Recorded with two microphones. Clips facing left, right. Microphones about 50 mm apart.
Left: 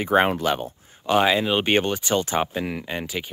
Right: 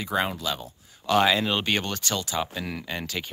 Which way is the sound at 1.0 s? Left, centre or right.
Centre.